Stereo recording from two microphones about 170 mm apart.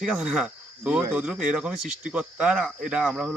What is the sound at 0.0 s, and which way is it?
Speech, 5° right (ahead or behind).